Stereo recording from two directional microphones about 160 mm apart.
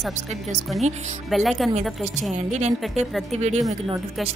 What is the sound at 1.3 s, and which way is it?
Speech, centre (ahead or behind).